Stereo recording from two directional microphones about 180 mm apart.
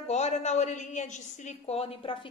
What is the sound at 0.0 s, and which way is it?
A woman's voice, 40° left (ahead or behind).